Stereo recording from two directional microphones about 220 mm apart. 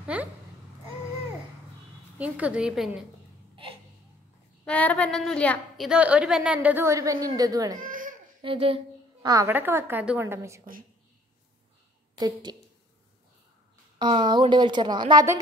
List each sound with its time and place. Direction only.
0.0 s a child's voice: 5° right (ahead or behind)
2.1 s a woman's voice: 5° right (ahead or behind)
4.6 s a woman's voice: 5° left (ahead or behind); by 7.7 s 15° right (ahead or behind)
7.7 s baby cry: 40° right (ahead or behind)
8.4 s a woman's voice: 25° right (ahead or behind)
12.2 s a woman's voice: 20° right (ahead or behind)
13.9 s a woman's voice: 20° right (ahead or behind)